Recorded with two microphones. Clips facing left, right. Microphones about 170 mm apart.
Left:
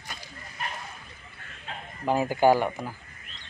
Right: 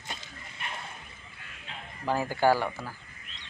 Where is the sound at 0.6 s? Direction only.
45° left (ahead or behind).